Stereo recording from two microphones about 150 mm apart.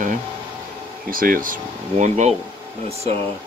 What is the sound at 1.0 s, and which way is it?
Speech, 70° right (ahead or behind).